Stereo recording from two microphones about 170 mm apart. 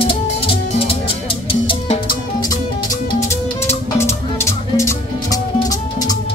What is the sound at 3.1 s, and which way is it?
Music, 15° left (ahead or behind).